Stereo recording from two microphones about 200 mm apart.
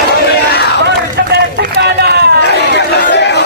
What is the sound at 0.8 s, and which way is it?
Run, 55° right (ahead or behind).